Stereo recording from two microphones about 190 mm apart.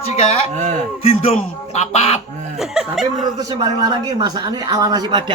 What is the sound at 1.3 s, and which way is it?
Speech, 35° left (ahead or behind).